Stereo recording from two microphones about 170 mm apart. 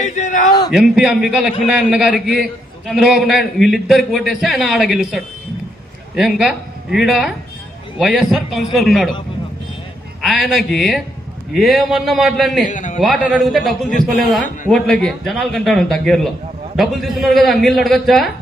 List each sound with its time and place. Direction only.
0.0 s a sound: 45° left (ahead or behind)
0.7 s a man's voice: centre (ahead or behind)
10.2 s a man's voice: centre (ahead or behind)
12.6 s a man's voice: 45° left (ahead or behind)
13.0 s a man's voice: centre (ahead or behind)